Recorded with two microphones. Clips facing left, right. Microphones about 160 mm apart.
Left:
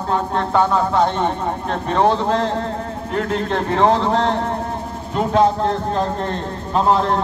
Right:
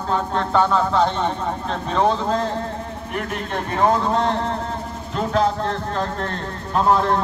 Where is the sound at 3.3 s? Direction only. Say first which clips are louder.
Left 6 dB; 25° left (ahead or behind).